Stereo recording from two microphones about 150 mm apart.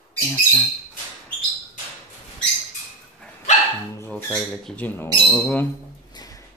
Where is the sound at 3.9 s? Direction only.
15° left (ahead or behind).